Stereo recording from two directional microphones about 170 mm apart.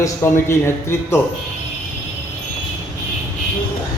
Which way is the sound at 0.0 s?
15° left (ahead or behind).